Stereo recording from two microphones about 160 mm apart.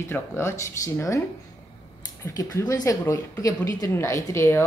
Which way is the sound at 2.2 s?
20° left (ahead or behind).